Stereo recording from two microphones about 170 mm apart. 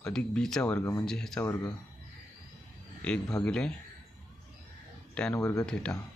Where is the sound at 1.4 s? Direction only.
20° left (ahead or behind).